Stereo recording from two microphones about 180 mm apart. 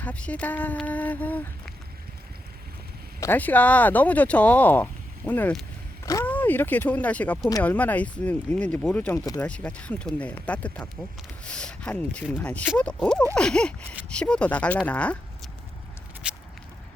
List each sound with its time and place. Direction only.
0.0 s speech: 5° left (ahead or behind)
3.2 s speech: 10° left (ahead or behind)
9.1 s speech: 20° left (ahead or behind)
9.4 s speech: 5° left (ahead or behind)
16.2 s a sound: 5° right (ahead or behind)